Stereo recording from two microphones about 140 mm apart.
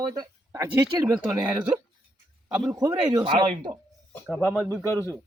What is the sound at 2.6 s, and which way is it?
Speech, 30° right (ahead or behind).